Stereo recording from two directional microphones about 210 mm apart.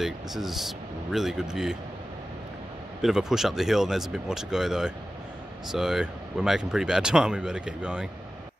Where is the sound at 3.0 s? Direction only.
Centre (ahead or behind).